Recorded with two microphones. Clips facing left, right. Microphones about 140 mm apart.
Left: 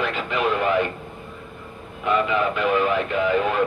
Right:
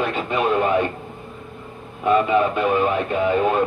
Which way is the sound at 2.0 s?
40° right (ahead or behind).